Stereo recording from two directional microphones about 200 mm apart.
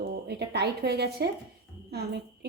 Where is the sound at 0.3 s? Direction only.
55° right (ahead or behind).